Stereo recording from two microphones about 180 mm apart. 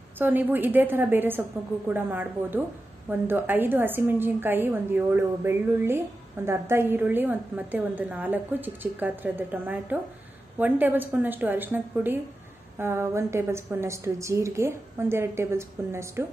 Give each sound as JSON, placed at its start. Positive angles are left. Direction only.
{"t": 0.2, "sound": "a woman's voice", "side_deg": -10}